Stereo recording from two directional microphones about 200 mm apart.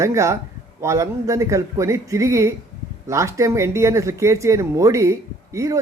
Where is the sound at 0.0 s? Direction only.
15° right (ahead or behind).